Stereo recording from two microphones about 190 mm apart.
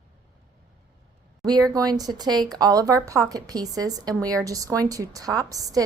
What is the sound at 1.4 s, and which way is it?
A woman's voice, 20° right (ahead or behind).